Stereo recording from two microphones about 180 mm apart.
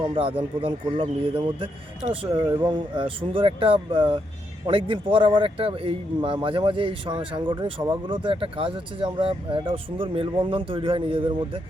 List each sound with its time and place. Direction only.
0.2 s a man's voice: 30° right (ahead or behind)